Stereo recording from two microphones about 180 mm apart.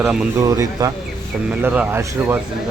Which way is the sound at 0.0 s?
5° right (ahead or behind).